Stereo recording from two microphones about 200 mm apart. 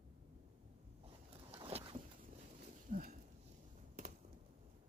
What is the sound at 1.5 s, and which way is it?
Vehicle, 30° right (ahead or behind).